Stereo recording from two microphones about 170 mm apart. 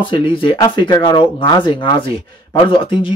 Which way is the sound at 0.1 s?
25° left (ahead or behind).